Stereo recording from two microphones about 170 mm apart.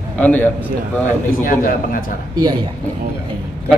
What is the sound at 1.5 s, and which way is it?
Speech, 55° left (ahead or behind).